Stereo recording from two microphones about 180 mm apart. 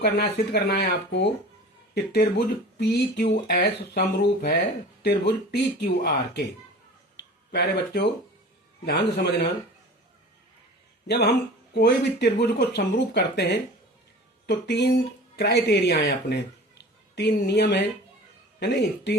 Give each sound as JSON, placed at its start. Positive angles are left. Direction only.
{"t": 0.0, "sound": "speech", "side_deg": 60}
{"t": 11.1, "sound": "a man's voice", "side_deg": 65}